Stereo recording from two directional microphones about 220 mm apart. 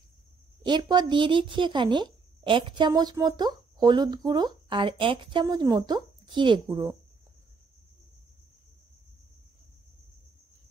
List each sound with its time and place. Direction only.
0.7 s speech: 20° right (ahead or behind)